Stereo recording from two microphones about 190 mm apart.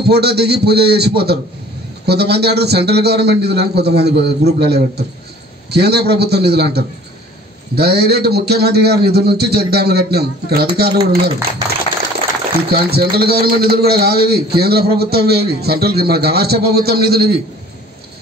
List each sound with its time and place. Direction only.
0.0 s a man's voice: 60° right (ahead or behind)
12.6 s a man's voice: 55° right (ahead or behind)